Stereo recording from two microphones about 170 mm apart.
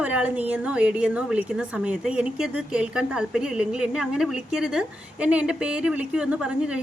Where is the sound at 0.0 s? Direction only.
10° right (ahead or behind).